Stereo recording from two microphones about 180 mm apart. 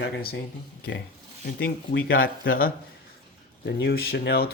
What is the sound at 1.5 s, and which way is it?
Speech, 65° left (ahead or behind).